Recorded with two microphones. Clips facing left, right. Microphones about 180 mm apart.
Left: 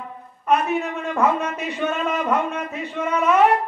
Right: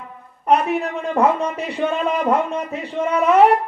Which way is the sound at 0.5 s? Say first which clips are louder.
Right 3 dB; 35° right (ahead or behind).